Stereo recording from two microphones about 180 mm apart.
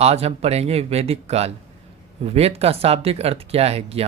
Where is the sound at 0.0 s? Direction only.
35° right (ahead or behind).